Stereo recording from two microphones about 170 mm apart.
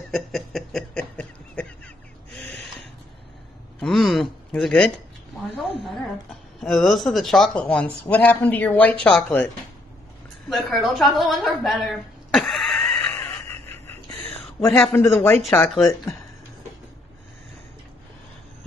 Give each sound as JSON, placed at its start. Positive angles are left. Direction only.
{"t": 0.1, "sound": "a sound", "side_deg": 0}
{"t": 3.8, "sound": "speech", "side_deg": 0}
{"t": 10.5, "sound": "a woman's voice", "side_deg": 0}
{"t": 13.0, "sound": "a sound", "side_deg": 10}
{"t": 14.7, "sound": "speech", "side_deg": 0}
{"t": 15.0, "sound": "speech", "side_deg": 15}